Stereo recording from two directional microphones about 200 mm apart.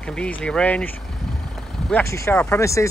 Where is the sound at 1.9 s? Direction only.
15° left (ahead or behind).